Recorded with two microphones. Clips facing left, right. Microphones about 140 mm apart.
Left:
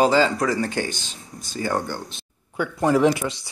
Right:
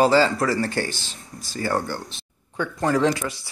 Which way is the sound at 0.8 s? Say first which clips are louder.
Left 1 dB; 20° left (ahead or behind).